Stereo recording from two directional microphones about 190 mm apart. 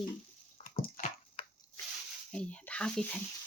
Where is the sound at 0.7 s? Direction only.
35° left (ahead or behind).